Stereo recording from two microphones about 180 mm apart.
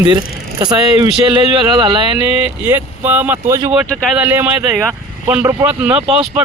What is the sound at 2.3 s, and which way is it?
Speech, 10° right (ahead or behind).